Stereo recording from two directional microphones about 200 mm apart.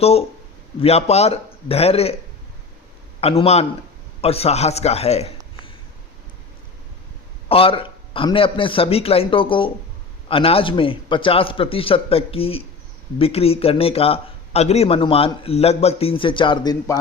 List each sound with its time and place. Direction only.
0.0 s a man's voice: 30° left (ahead or behind)
3.2 s a man's voice: 30° left (ahead or behind)
7.4 s speech: 30° left (ahead or behind)